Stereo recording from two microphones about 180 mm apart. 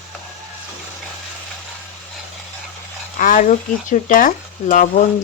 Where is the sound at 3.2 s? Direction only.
45° left (ahead or behind).